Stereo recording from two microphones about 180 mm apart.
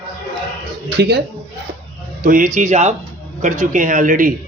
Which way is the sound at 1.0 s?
65° right (ahead or behind).